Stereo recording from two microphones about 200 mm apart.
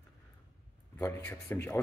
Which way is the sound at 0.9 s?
10° left (ahead or behind).